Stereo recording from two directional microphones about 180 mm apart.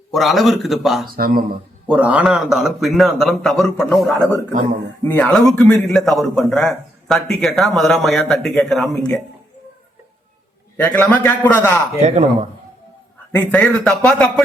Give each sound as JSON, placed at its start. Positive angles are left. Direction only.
{"t": 0.1, "sound": "a man's voice", "side_deg": 0}
{"t": 1.0, "sound": "speech", "side_deg": -55}
{"t": 1.9, "sound": "a man's voice", "side_deg": -10}
{"t": 10.8, "sound": "a man's voice", "side_deg": 10}
{"t": 12.0, "sound": "speech", "side_deg": -40}
{"t": 13.5, "sound": "a man's voice", "side_deg": 5}